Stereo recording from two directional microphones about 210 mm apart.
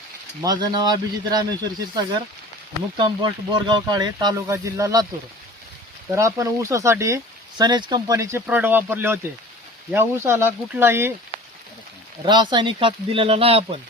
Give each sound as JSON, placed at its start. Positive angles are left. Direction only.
{"t": 0.4, "sound": "speech", "side_deg": -20}
{"t": 3.0, "sound": "speech", "side_deg": -20}
{"t": 6.1, "sound": "speech", "side_deg": -15}
{"t": 12.2, "sound": "speech", "side_deg": -20}